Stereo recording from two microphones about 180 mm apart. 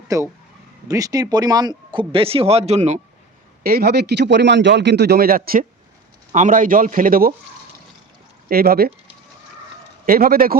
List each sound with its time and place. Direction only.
0.1 s speech: 20° right (ahead or behind); by 3.0 s 40° right (ahead or behind)
3.6 s a man's voice: 60° right (ahead or behind)
8.4 s a man's voice: 55° right (ahead or behind)
10.1 s a man's voice: 55° right (ahead or behind)